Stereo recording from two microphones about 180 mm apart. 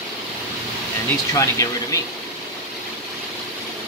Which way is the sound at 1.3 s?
15° left (ahead or behind).